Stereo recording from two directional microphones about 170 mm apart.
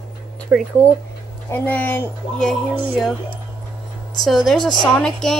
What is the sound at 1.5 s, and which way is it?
Speech, 10° left (ahead or behind).